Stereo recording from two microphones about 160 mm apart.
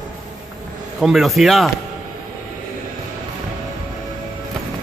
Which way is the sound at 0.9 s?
Centre (ahead or behind).